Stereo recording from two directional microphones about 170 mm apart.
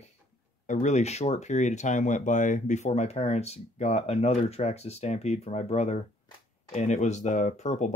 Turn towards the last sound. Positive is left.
turn(degrees=45)  # may be behind; listen again after turning